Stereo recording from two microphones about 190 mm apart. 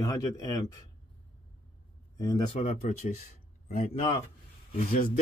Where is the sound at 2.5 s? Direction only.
35° left (ahead or behind).